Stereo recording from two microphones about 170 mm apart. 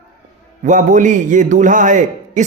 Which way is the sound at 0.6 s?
50° right (ahead or behind).